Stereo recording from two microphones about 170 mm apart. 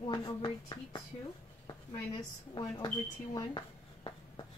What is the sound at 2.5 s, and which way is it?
Speech, 25° left (ahead or behind).